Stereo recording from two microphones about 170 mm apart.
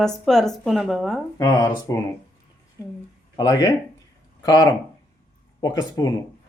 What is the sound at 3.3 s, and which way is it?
Speech, 20° left (ahead or behind).